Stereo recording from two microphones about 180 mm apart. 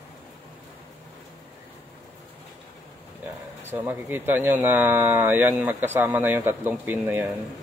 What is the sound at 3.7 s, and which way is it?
Speech, 10° right (ahead or behind).